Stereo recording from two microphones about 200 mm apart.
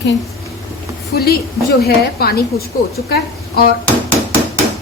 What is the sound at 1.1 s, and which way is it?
A woman's voice, 50° left (ahead or behind).